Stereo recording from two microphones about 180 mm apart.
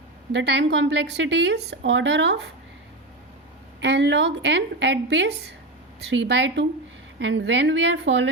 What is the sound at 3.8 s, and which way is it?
A woman's voice, 75° right (ahead or behind).